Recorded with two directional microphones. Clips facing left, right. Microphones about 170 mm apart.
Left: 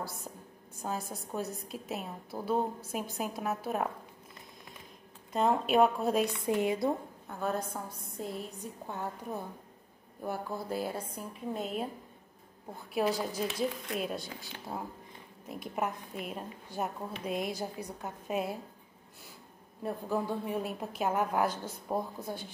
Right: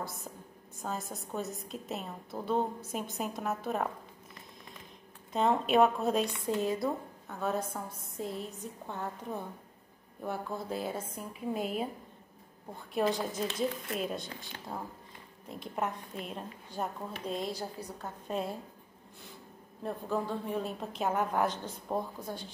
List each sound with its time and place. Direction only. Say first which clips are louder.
0.7 s a woman's voice: left 1 dB; centre (ahead or behind)
5.3 s a woman's voice: even; centre (ahead or behind)
6.4 s a woman's voice: left 2 dB; 15° left (ahead or behind)
7.2 s a woman's voice: right 1 dB; centre (ahead or behind)
12.9 s a woman's voice: even; 5° left (ahead or behind)
19.8 s a woman's voice: left 1 dB; 5° left (ahead or behind)